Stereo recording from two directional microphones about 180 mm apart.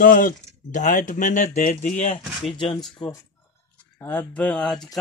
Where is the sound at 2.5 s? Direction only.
25° left (ahead or behind).